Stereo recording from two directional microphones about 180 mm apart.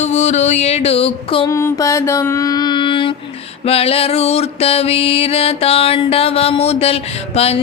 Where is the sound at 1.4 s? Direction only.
15° left (ahead or behind); by 7.6 s 35° left (ahead or behind).